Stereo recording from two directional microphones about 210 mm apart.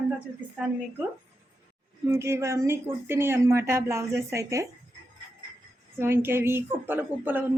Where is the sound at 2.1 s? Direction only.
10° right (ahead or behind).